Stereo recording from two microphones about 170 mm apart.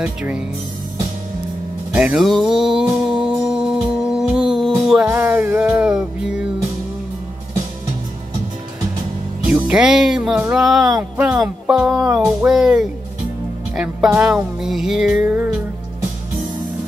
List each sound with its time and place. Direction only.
0.0 s speech: 5° right (ahead or behind)
1.9 s music: 5° right (ahead or behind)
9.5 s speech: 5° right (ahead or behind)